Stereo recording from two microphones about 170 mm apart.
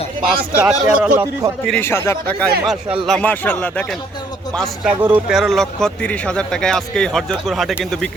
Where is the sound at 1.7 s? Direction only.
15° left (ahead or behind).